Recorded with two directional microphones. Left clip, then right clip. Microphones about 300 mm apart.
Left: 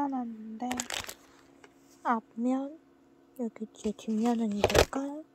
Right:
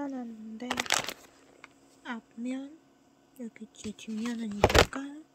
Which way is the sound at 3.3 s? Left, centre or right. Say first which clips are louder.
Left 7 dB; centre.